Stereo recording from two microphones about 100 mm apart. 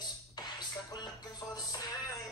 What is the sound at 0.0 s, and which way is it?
Music, 45° left (ahead or behind).